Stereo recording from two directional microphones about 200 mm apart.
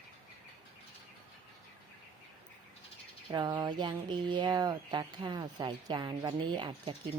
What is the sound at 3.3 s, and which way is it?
Speech, 20° right (ahead or behind).